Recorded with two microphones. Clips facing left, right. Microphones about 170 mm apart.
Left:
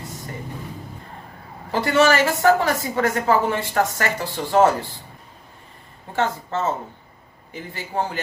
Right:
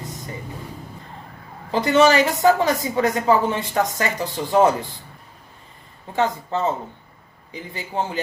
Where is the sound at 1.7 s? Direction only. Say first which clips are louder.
Right 2 dB; 20° right (ahead or behind).